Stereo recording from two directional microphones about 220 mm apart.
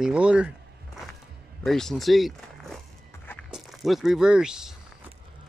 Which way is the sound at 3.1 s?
10° left (ahead or behind).